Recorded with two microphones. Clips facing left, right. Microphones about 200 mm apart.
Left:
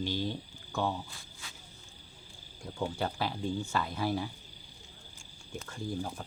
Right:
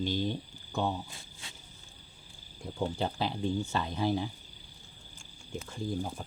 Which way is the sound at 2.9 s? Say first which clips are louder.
Right 1 dB; 20° right (ahead or behind).